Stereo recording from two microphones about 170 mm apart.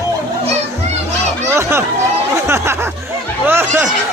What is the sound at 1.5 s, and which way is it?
Chatter, 15° right (ahead or behind).